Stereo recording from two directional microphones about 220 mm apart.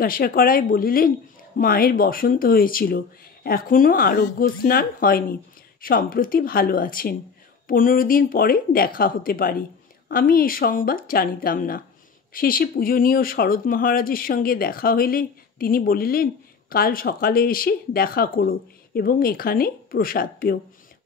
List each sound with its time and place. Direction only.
0.0 s speech: 40° left (ahead or behind)